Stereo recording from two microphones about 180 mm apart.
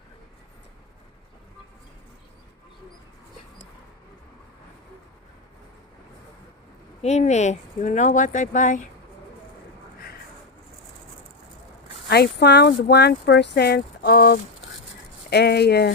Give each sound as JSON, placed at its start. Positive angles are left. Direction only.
{"t": 7.0, "sound": "speech", "side_deg": 40}
{"t": 12.0, "sound": "speech", "side_deg": 65}